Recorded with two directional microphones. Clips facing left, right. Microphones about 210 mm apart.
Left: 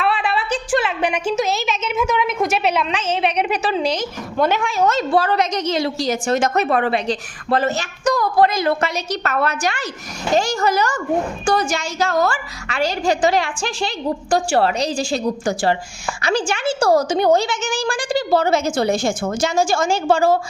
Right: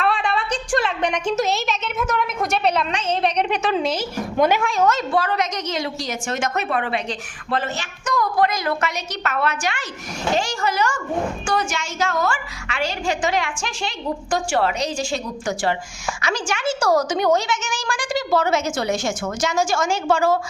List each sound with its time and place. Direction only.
0.0 s a woman's voice: 5° left (ahead or behind)
4.9 s a woman's voice: 30° left (ahead or behind)